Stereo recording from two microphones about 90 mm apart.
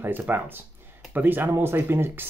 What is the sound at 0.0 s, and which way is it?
Speech, 25° right (ahead or behind).